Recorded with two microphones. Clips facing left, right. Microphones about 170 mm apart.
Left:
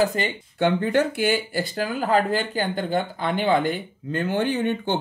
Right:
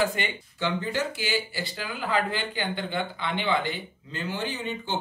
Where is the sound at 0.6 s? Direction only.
55° left (ahead or behind).